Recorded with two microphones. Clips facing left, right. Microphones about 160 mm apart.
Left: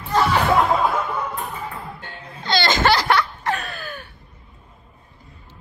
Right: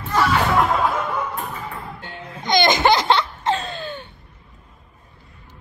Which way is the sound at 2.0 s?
15° right (ahead or behind).